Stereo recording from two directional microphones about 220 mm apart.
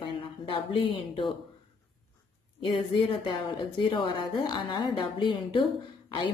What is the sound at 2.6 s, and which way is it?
A woman's voice, 20° left (ahead or behind).